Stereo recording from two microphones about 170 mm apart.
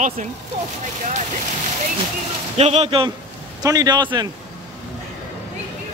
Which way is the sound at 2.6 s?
40° right (ahead or behind).